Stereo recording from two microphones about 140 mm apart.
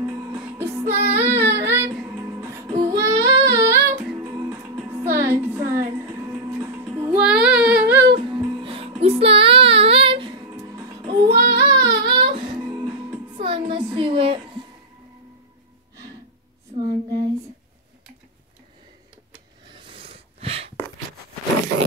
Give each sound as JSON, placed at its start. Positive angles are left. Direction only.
{"t": 0.4, "sound": "music", "side_deg": -15}
{"t": 1.1, "sound": "child singing", "side_deg": -15}
{"t": 2.0, "sound": "music", "side_deg": -20}
{"t": 2.8, "sound": "child singing", "side_deg": -20}
{"t": 4.2, "sound": "music", "side_deg": -25}
{"t": 8.1, "sound": "music", "side_deg": -35}
{"t": 10.5, "sound": "music", "side_deg": -20}
{"t": 13.4, "sound": "a sound", "side_deg": -40}
{"t": 16.8, "sound": "female singing", "side_deg": -30}
{"t": 19.7, "sound": "a sound", "side_deg": -40}